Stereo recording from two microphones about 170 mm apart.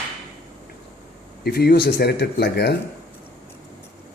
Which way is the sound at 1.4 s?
70° left (ahead or behind).